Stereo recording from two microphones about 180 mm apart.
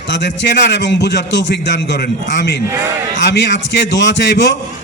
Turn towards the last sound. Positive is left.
turn(degrees=75)  # may be behind; listen again after turning